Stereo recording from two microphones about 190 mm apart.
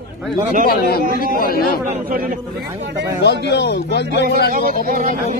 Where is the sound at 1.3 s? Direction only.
50° left (ahead or behind).